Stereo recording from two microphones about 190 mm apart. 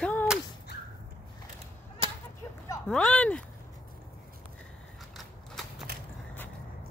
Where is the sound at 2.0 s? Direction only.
30° right (ahead or behind).